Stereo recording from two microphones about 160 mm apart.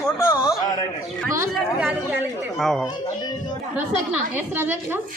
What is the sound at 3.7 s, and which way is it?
A woman's voice, 10° right (ahead or behind).